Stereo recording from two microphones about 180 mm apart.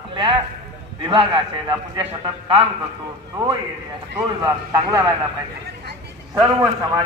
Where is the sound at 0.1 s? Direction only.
25° right (ahead or behind).